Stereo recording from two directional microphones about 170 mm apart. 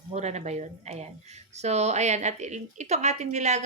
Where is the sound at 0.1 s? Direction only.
40° right (ahead or behind).